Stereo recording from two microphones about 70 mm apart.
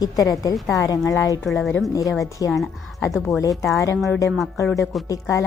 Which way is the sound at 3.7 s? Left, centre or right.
Left.